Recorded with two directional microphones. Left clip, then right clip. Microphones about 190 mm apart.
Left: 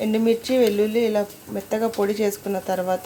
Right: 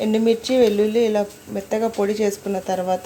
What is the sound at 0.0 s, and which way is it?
Speech, centre (ahead or behind).